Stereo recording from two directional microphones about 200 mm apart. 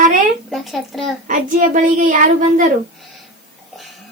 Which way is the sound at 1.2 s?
40° right (ahead or behind).